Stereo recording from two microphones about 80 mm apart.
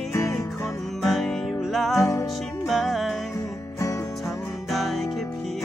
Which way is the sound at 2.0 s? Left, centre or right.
Left.